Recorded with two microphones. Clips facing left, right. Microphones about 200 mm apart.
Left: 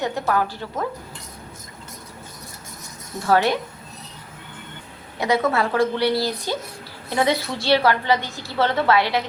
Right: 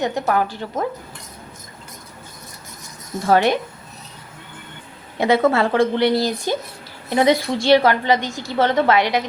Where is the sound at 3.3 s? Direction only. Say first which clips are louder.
Right 3 dB; 20° right (ahead or behind).